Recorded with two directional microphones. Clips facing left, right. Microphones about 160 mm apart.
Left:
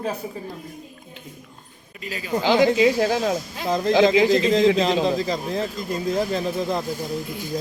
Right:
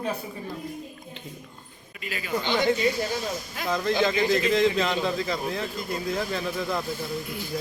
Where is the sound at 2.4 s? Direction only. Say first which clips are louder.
Left 7 dB; 90° left.